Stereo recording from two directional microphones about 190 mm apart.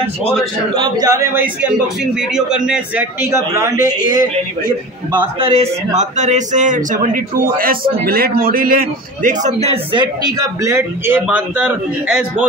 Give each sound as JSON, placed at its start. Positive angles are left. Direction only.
{"t": 0.7, "sound": "a man's voice", "side_deg": -20}
{"t": 3.7, "sound": "a man's voice", "side_deg": 50}
{"t": 4.1, "sound": "a man's voice", "side_deg": -20}
{"t": 10.2, "sound": "a man's voice", "side_deg": -15}